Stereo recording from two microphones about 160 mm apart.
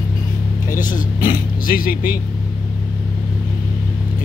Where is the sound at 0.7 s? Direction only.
55° left (ahead or behind).